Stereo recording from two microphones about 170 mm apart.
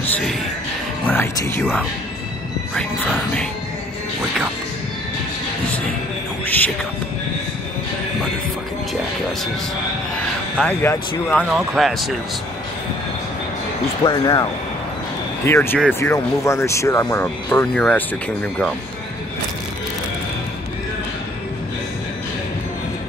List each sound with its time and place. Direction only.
1.0 s speech: 15° left (ahead or behind)
6.4 s music: 10° left (ahead or behind)
10.8 s speech: 10° left (ahead or behind)
11.5 s speech: centre (ahead or behind)
14.0 s speech: 25° left (ahead or behind); by 18.7 s 5° left (ahead or behind)